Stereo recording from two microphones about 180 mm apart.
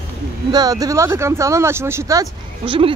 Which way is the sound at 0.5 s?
20° right (ahead or behind).